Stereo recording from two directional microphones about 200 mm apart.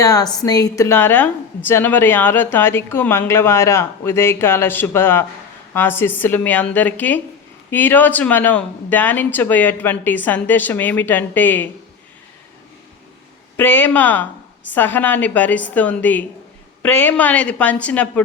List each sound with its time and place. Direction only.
0.0 s a woman's voice: 15° left (ahead or behind)
13.6 s a woman's voice: 10° left (ahead or behind)